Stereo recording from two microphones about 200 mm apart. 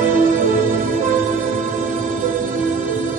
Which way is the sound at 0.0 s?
40° right (ahead or behind).